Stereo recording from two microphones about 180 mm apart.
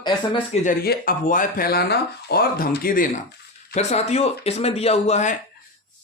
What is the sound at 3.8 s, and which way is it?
Speech, 40° left (ahead or behind).